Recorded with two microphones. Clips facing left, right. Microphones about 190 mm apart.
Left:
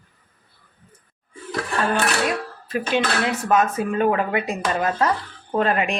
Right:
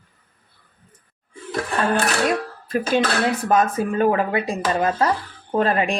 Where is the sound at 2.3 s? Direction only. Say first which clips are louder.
Right 3 dB; 40° right (ahead or behind).